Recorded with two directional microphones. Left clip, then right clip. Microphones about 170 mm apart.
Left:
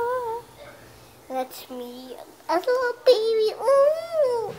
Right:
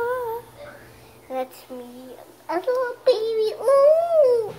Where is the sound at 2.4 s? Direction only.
45° left (ahead or behind).